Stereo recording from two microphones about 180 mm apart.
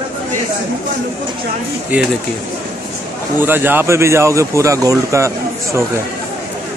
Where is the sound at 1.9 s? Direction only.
10° right (ahead or behind).